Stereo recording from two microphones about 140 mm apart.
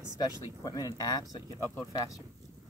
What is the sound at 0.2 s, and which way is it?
Speech, 25° left (ahead or behind).